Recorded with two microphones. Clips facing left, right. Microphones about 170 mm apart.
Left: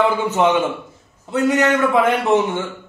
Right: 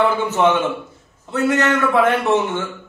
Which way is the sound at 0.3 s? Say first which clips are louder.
Even; 15° left (ahead or behind).